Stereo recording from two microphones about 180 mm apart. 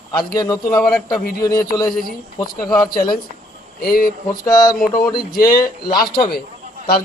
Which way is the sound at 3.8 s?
55° left (ahead or behind).